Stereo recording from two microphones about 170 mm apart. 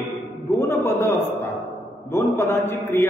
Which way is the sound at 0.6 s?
15° left (ahead or behind).